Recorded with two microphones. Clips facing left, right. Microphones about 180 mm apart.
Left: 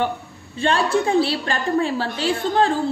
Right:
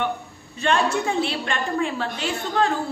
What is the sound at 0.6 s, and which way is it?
A woman's voice, 30° left (ahead or behind).